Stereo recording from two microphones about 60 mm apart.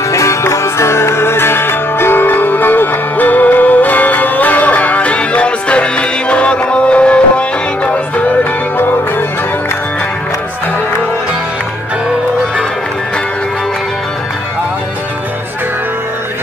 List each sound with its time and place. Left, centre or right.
0.1 s music: left